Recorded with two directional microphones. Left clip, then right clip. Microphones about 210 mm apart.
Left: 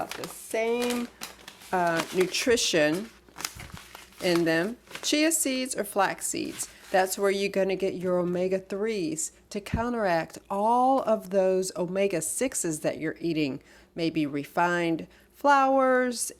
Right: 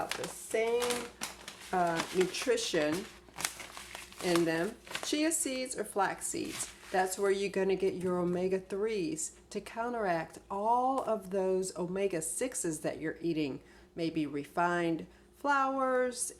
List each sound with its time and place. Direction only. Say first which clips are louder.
0.5 s speech: left 4 dB; 45° left (ahead or behind)
3.4 s a sound: left 1 dB; centre (ahead or behind)
4.4 s speech: left 7 dB; 45° left (ahead or behind)